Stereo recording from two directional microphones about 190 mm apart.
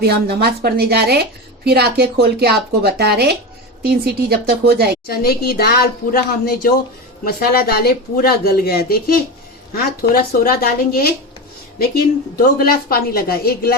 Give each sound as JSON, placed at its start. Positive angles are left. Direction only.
{"t": 0.0, "sound": "speech", "side_deg": -60}
{"t": 5.0, "sound": "speech", "side_deg": 55}
{"t": 12.5, "sound": "speech", "side_deg": 50}